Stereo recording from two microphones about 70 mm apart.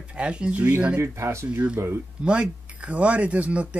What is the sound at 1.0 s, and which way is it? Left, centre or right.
Speech, right.